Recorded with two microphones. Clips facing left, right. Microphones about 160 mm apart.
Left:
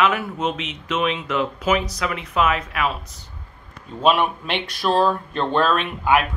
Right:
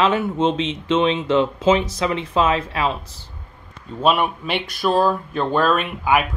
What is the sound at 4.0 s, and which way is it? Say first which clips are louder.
Speech: even; centre (ahead or behind).